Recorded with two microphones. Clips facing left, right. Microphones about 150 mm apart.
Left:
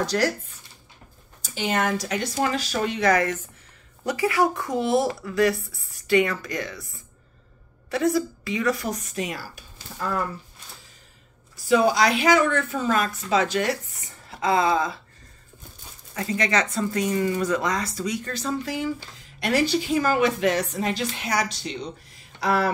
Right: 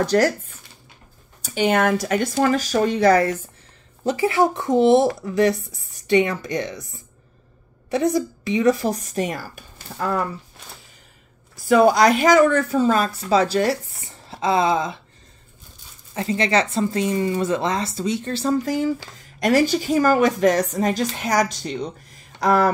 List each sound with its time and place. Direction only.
0.0 s a woman's voice: 55° right (ahead or behind)
1.4 s a woman's voice: 60° right (ahead or behind); by 6.8 s 20° right (ahead or behind)
7.9 s speech: 20° right (ahead or behind); by 9.7 s 45° right (ahead or behind)
11.6 s speech: 50° right (ahead or behind); by 15.0 s 20° right (ahead or behind)
16.2 s a woman's voice: 30° right (ahead or behind); by 22.7 s 45° right (ahead or behind)